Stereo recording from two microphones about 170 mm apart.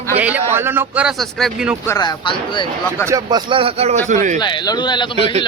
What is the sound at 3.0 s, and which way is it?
Speech, 20° right (ahead or behind).